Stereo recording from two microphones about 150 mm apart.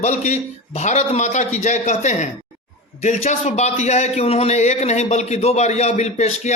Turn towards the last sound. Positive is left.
turn(degrees=50)  # may be behind; listen again after turning